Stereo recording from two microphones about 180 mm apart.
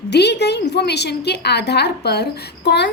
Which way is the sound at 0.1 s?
70° left (ahead or behind).